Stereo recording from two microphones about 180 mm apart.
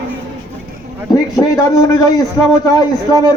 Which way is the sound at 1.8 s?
20° left (ahead or behind).